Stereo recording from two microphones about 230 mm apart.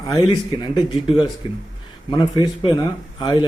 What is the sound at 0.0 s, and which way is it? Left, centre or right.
Speech, centre.